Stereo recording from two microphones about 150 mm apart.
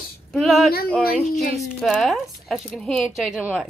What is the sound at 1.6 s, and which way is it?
A woman's voice, centre (ahead or behind).